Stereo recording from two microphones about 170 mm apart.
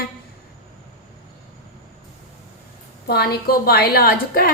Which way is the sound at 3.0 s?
65° left (ahead or behind).